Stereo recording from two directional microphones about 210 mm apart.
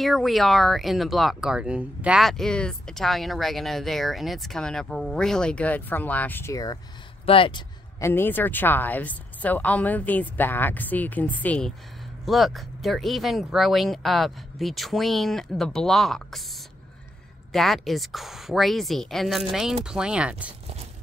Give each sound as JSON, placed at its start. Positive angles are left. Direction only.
{"t": 0.0, "sound": "speech", "side_deg": 0}
{"t": 8.0, "sound": "a woman's voice", "side_deg": 10}
{"t": 17.5, "sound": "speech", "side_deg": 0}